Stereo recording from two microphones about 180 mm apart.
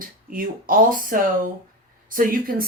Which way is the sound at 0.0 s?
50° right (ahead or behind).